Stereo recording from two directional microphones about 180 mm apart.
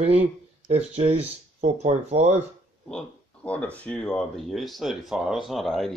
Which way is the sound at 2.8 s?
5° left (ahead or behind).